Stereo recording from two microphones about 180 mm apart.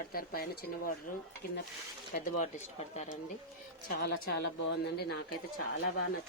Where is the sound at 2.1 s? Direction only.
40° left (ahead or behind).